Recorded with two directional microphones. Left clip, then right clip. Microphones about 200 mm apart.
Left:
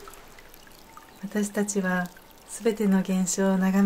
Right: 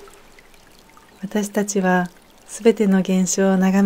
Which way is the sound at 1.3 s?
35° right (ahead or behind).